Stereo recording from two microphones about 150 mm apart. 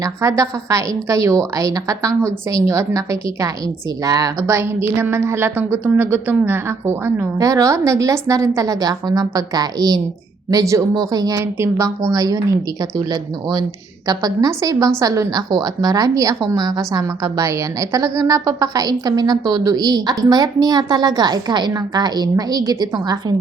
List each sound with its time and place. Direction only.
0.0 s a woman's voice: 20° right (ahead or behind)
14.1 s a woman's voice: 25° right (ahead or behind)